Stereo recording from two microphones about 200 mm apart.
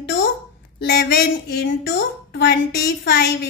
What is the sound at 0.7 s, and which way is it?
A woman's voice, 55° left (ahead or behind).